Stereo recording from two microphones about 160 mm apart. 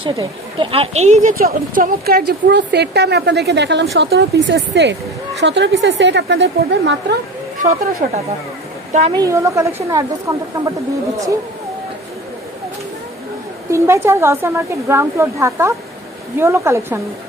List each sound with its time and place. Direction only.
0.1 s speech: 30° right (ahead or behind); by 1.3 s 45° right (ahead or behind)
1.4 s a woman's voice: 70° right (ahead or behind); by 7.2 s 90° right
7.5 s speech: 50° right (ahead or behind)
9.1 s a woman's voice: 20° right (ahead or behind)
13.7 s a woman's voice: 15° right (ahead or behind)